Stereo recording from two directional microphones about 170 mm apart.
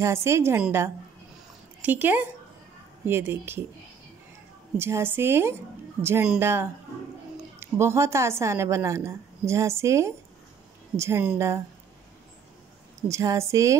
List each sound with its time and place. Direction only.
0.0 s a woman's voice: 15° right (ahead or behind)
4.7 s a woman's voice: 15° right (ahead or behind)
13.1 s a woman's voice: 20° right (ahead or behind)